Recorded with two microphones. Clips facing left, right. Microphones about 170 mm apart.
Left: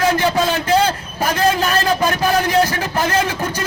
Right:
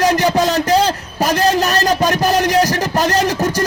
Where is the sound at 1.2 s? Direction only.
40° right (ahead or behind).